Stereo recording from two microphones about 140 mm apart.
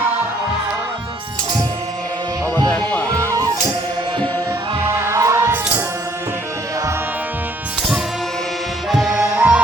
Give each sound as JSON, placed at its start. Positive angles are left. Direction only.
{"t": 2.6, "sound": "music", "side_deg": 10}
{"t": 3.1, "sound": "music", "side_deg": -20}
{"t": 4.9, "sound": "music", "side_deg": -20}
{"t": 8.9, "sound": "music", "side_deg": -5}